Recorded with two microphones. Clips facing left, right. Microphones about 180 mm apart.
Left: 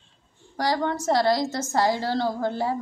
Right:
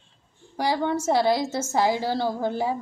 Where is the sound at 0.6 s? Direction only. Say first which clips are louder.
Right 1 dB; 10° right (ahead or behind).